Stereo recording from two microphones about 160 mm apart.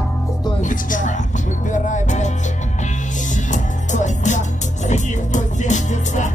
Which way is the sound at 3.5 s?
50° left (ahead or behind).